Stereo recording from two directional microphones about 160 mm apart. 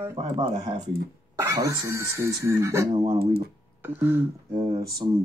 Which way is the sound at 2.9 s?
40° right (ahead or behind).